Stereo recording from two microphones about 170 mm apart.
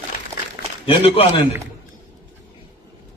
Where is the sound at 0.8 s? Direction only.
30° left (ahead or behind).